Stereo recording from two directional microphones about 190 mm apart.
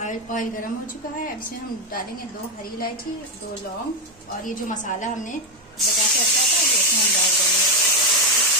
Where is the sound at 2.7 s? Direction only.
50° left (ahead or behind).